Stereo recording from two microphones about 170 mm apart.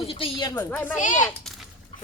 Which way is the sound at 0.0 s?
35° left (ahead or behind).